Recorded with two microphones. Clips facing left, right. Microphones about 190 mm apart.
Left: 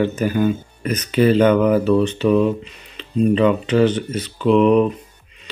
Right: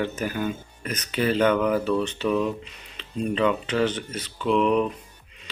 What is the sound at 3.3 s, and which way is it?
Speech, 10° left (ahead or behind).